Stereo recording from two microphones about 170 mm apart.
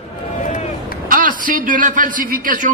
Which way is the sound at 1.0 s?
50° right (ahead or behind).